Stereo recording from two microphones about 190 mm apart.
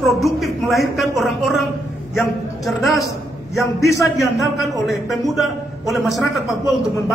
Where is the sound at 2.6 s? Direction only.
Centre (ahead or behind).